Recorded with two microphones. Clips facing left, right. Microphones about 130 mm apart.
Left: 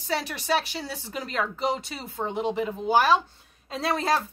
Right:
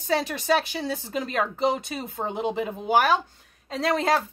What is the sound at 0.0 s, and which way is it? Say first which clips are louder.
Speech: right 4 dB; 20° right (ahead or behind).